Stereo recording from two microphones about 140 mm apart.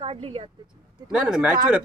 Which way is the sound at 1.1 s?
5° right (ahead or behind).